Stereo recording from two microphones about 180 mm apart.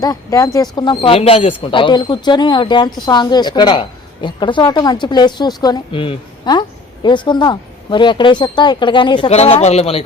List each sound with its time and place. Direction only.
0.0 s speech: 20° left (ahead or behind); by 10.0 s 35° left (ahead or behind)